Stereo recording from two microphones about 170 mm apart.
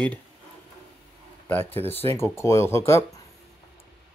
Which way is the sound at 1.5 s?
10° left (ahead or behind).